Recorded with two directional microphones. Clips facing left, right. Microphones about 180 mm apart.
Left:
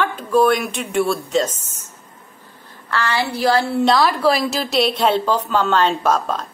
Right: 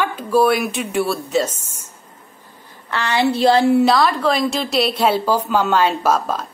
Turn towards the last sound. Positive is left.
turn(degrees=-5)  # may be behind; listen again after turning